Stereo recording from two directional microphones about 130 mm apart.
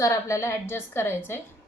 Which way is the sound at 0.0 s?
25° left (ahead or behind).